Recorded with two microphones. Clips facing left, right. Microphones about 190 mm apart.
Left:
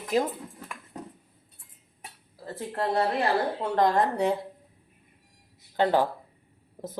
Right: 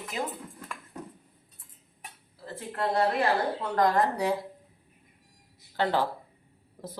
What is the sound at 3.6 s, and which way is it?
Speech, 25° left (ahead or behind).